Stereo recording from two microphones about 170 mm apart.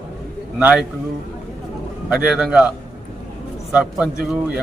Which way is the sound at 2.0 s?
5° right (ahead or behind).